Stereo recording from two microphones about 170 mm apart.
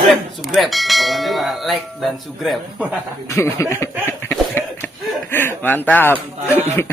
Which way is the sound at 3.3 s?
15° left (ahead or behind).